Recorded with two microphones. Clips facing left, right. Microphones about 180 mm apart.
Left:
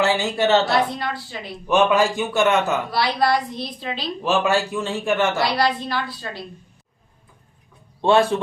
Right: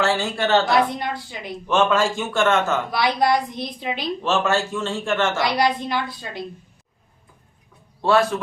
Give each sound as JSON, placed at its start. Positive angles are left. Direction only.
{"t": 0.0, "sound": "a man's voice", "side_deg": 15}
{"t": 0.9, "sound": "a woman's voice", "side_deg": -20}
{"t": 1.6, "sound": "a man's voice", "side_deg": 15}
{"t": 3.0, "sound": "a woman's voice", "side_deg": -20}
{"t": 4.2, "sound": "a man's voice", "side_deg": 10}
{"t": 5.4, "sound": "a woman's voice", "side_deg": -20}
{"t": 8.0, "sound": "a man's voice", "side_deg": 30}